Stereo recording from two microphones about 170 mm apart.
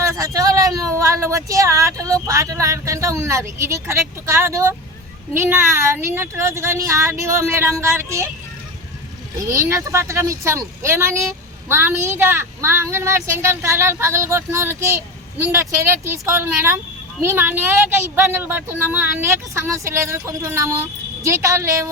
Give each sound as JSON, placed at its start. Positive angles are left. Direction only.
{"t": 0.0, "sound": "speech", "side_deg": -20}
{"t": 9.5, "sound": "speech", "side_deg": -20}